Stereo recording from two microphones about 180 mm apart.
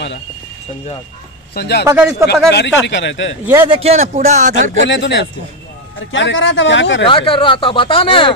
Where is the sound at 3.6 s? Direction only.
30° right (ahead or behind).